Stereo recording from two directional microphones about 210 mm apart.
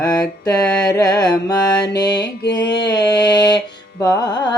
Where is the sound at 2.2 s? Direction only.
50° left (ahead or behind).